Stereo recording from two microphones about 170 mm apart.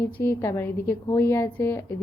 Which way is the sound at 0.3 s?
15° left (ahead or behind).